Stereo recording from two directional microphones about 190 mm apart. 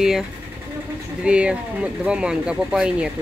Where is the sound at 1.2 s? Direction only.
5° right (ahead or behind).